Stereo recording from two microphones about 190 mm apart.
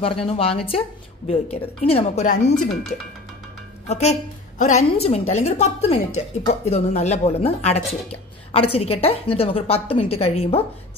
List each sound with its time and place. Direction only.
0.0 s a woman's voice: 30° left (ahead or behind)
2.2 s speech: 45° left (ahead or behind)
3.9 s a woman's voice: 35° left (ahead or behind)